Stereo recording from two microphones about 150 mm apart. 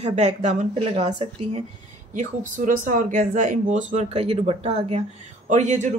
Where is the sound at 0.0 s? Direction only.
50° right (ahead or behind).